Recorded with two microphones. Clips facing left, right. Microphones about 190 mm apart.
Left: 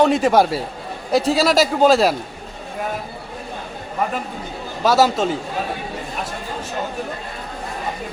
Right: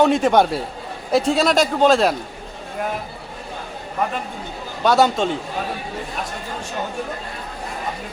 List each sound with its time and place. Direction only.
0.0 s a man's voice: centre (ahead or behind)
4.8 s a man's voice: centre (ahead or behind)